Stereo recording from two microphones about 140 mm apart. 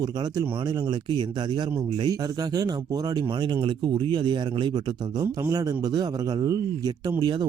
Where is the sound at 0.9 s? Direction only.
30° right (ahead or behind).